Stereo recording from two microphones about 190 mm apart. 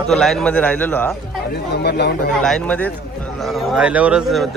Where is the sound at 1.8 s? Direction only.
60° left (ahead or behind).